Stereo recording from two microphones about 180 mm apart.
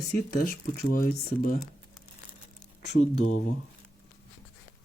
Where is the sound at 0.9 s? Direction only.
50° left (ahead or behind).